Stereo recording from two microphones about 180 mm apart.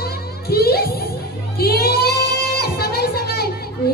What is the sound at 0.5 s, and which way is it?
Music, 60° left (ahead or behind).